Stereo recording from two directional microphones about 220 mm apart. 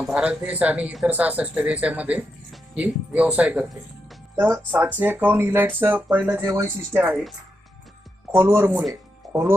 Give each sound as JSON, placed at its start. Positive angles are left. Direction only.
{"t": 0.0, "sound": "speech", "side_deg": -5}
{"t": 8.5, "sound": "speech", "side_deg": -10}